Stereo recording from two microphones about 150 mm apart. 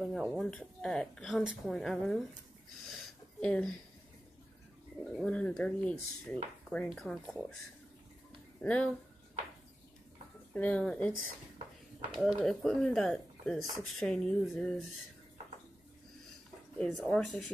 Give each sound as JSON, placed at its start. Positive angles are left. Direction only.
{"t": 0.0, "sound": "speech", "side_deg": 0}
{"t": 2.9, "sound": "a sound", "side_deg": 5}
{"t": 5.1, "sound": "speech", "side_deg": 5}
{"t": 8.5, "sound": "speech", "side_deg": 10}
{"t": 10.5, "sound": "speech", "side_deg": 10}
{"t": 12.4, "sound": "speech", "side_deg": 5}
{"t": 16.7, "sound": "speech", "side_deg": 5}